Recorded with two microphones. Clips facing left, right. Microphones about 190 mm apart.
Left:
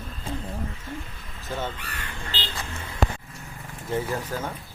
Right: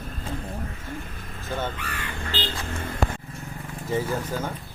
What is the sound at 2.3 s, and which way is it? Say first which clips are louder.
Music: right 5 dB; 50° right (ahead or behind).